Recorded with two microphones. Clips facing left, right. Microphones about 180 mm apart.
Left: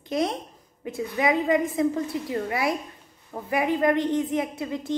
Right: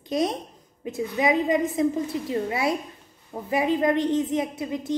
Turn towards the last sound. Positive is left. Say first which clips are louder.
# right 1 dB
turn(degrees=-20)  # may be behind; listen again after turning